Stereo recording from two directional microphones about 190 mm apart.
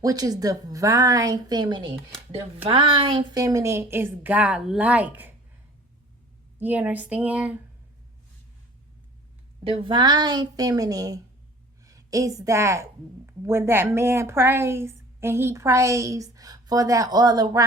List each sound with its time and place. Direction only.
0.0 s a woman's voice: 20° right (ahead or behind)
6.6 s a woman's voice: 10° right (ahead or behind)
9.6 s a woman's voice: 25° right (ahead or behind)